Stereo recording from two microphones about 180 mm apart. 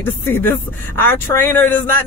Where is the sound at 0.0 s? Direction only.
10° left (ahead or behind).